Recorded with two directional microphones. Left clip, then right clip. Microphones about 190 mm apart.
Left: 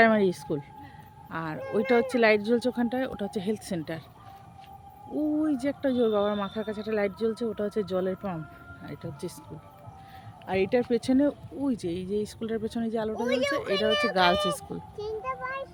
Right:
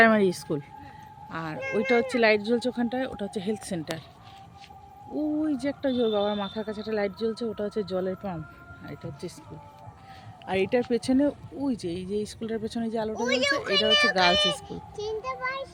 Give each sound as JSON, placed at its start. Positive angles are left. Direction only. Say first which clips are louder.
{"t": 0.0, "sound": "speech", "louder": "right 2 dB", "side_deg": -10}
{"t": 1.3, "sound": "speech", "louder": "right 1 dB", "side_deg": 5}
{"t": 5.1, "sound": "speech", "louder": "left 1 dB", "side_deg": 5}
{"t": 10.4, "sound": "speech", "louder": "even", "side_deg": -5}
{"t": 13.2, "sound": "a child's voice", "louder": "right 2 dB", "side_deg": 15}
{"t": 13.5, "sound": "speech", "louder": "right 2 dB", "side_deg": 0}
{"t": 13.7, "sound": "speech", "louder": "right 3 dB", "side_deg": 15}
{"t": 14.5, "sound": "speech", "louder": "right 1 dB", "side_deg": -10}
{"t": 15.0, "sound": "a child's voice", "louder": "right 2 dB", "side_deg": -35}